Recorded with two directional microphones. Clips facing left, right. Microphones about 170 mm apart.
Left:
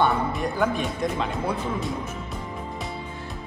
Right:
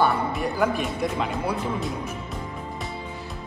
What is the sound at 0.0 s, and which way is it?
Speech, 5° right (ahead or behind).